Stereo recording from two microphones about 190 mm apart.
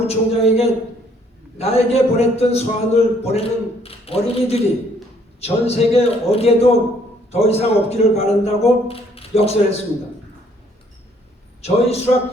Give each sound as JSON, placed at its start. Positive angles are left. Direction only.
{"t": 0.1, "sound": "a man's voice", "side_deg": 35}
{"t": 11.6, "sound": "a man's voice", "side_deg": 35}